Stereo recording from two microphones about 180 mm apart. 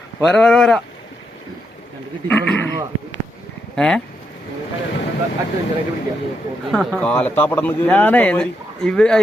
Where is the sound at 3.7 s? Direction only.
5° left (ahead or behind).